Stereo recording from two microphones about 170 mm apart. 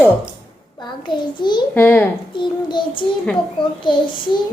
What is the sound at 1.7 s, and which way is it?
Speech, 10° left (ahead or behind).